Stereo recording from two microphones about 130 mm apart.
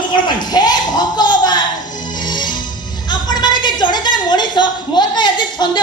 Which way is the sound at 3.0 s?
35° left (ahead or behind).